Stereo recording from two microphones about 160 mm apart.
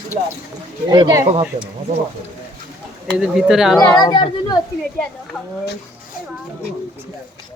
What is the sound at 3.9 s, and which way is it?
Speech, 30° left (ahead or behind).